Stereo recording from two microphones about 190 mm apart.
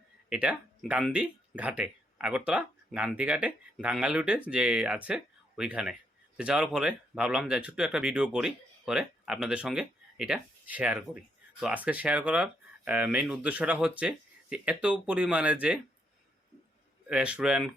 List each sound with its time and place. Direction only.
0.3 s speech: 5° right (ahead or behind)
17.1 s speech: 5° right (ahead or behind)